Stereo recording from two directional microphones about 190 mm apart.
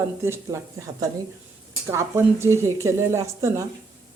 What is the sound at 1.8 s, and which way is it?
A woman's voice, 15° right (ahead or behind).